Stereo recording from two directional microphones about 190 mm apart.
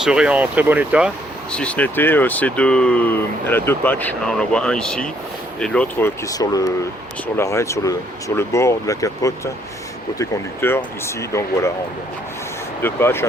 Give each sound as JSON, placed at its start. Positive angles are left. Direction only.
{"t": 0.0, "sound": "speech", "side_deg": -5}
{"t": 1.5, "sound": "speech", "side_deg": 5}
{"t": 6.2, "sound": "speech", "side_deg": 20}
{"t": 12.8, "sound": "speech", "side_deg": 10}